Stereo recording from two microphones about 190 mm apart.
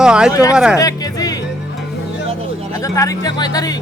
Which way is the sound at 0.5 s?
5° right (ahead or behind).